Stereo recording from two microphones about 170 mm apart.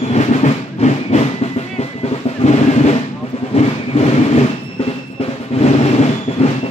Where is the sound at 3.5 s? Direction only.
40° left (ahead or behind).